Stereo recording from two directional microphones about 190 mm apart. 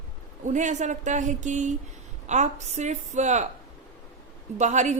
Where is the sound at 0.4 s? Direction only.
40° right (ahead or behind).